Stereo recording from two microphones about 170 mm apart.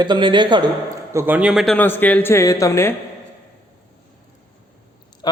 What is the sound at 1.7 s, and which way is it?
A man's voice, 10° left (ahead or behind).